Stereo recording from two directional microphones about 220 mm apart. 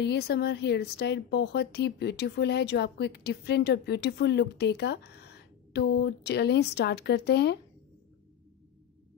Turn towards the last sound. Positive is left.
turn(degrees=50)  # may be behind; listen again after turning